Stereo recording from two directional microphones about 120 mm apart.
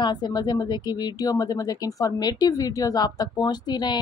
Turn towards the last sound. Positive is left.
turn(degrees=35)  # may be behind; listen again after turning